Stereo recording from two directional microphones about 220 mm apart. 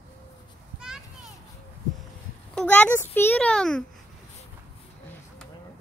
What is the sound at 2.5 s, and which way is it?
A child's voice, 5° left (ahead or behind).